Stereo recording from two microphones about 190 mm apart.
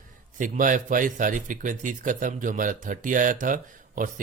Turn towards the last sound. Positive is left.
turn(degrees=-45)  # may be behind; listen again after turning